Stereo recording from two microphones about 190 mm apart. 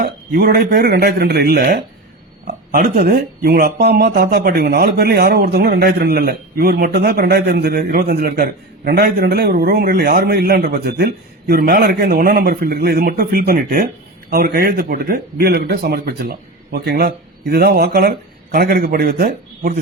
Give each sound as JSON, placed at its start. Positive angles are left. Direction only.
{"t": 0.0, "sound": "a man's voice", "side_deg": -55}